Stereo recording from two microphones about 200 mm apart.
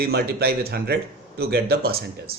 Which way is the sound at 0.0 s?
50° right (ahead or behind).